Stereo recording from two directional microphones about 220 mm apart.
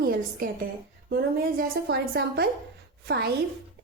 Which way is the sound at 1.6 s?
45° right (ahead or behind).